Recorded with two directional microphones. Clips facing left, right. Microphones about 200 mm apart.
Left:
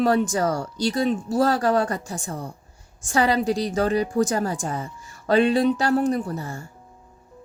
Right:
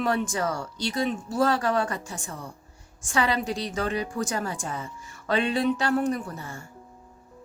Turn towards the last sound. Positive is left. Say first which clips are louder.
# left 7 dB
turn(degrees=35)  # may be behind; listen again after turning